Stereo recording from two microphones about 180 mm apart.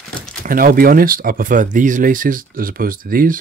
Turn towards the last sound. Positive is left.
turn(degrees=-50)  # may be behind; listen again after turning